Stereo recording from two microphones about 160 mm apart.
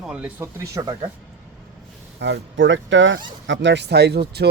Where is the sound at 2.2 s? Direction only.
90° right.